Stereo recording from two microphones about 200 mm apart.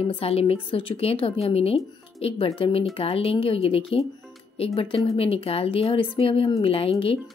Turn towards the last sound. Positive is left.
turn(degrees=30)  # may be behind; listen again after turning